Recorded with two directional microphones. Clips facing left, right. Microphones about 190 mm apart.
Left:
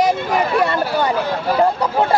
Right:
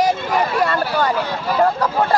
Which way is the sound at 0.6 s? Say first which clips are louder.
Left 1 dB; 20° left (ahead or behind).